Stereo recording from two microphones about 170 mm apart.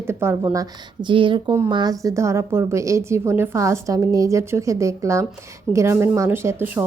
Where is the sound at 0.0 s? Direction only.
15° right (ahead or behind).